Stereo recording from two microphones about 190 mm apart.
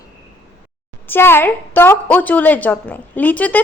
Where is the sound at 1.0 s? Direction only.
10° left (ahead or behind).